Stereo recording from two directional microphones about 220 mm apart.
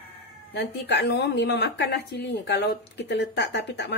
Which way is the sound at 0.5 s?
50° left (ahead or behind).